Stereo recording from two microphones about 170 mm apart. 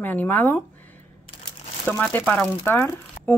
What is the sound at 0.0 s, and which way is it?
Speech, 10° left (ahead or behind).